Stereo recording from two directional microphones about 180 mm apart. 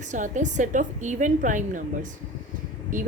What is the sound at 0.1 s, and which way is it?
A woman's voice, 45° right (ahead or behind).